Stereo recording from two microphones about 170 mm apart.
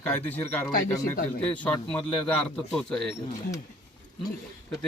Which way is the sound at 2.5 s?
5° left (ahead or behind).